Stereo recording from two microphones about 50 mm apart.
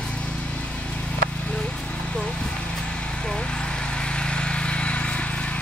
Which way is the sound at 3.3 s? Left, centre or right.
Centre.